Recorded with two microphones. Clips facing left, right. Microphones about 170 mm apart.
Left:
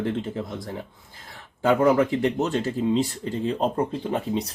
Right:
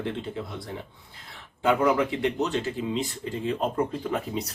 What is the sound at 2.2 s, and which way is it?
Speech, 45° left (ahead or behind).